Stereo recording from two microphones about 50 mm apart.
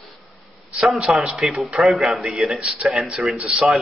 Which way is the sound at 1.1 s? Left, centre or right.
Centre.